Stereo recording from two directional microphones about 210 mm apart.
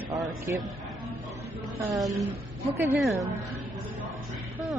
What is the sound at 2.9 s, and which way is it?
Speech, centre (ahead or behind).